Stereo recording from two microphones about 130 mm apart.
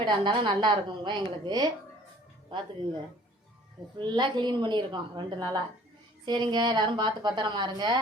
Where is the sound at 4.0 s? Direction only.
35° right (ahead or behind).